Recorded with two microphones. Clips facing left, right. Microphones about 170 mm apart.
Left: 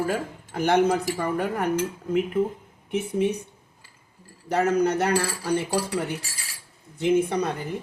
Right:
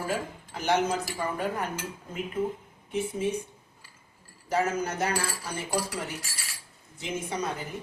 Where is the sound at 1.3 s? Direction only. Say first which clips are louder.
Left 4 dB; 70° left (ahead or behind).